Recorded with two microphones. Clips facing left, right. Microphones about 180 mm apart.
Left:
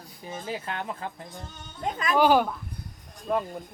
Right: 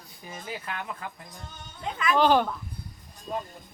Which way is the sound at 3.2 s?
60° left (ahead or behind).